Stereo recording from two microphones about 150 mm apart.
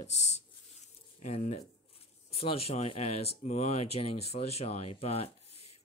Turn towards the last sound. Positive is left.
turn(degrees=40)  # may be behind; listen again after turning